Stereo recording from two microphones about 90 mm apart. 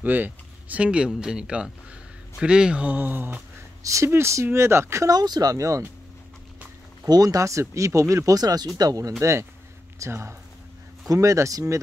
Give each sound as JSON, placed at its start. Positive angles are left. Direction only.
{"t": 0.0, "sound": "speech", "side_deg": -20}
{"t": 3.8, "sound": "speech", "side_deg": -35}
{"t": 5.1, "sound": "speech", "side_deg": -50}
{"t": 7.1, "sound": "speech", "side_deg": -45}
{"t": 9.2, "sound": "speech", "side_deg": -30}